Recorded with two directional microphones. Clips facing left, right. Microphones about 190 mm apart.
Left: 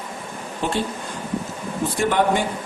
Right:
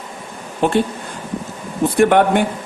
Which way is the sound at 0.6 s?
60° right (ahead or behind).